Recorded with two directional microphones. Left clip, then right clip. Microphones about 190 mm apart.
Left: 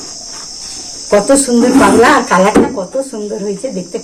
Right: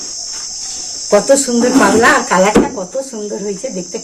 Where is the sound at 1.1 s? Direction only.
20° right (ahead or behind).